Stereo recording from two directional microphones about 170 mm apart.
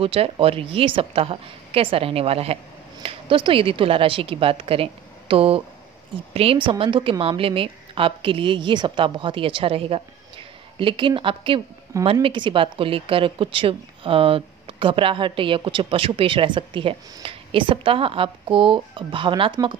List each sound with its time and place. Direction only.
0.0 s a woman's voice: 35° right (ahead or behind)